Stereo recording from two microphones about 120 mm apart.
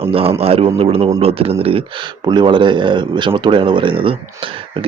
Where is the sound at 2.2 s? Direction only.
40° right (ahead or behind).